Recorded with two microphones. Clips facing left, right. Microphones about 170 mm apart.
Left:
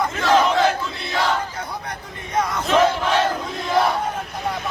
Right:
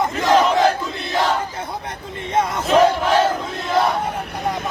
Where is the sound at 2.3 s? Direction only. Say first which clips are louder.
Right 2 dB; 25° right (ahead or behind).